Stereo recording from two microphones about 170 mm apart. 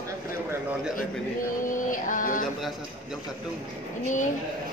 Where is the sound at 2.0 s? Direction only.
50° left (ahead or behind).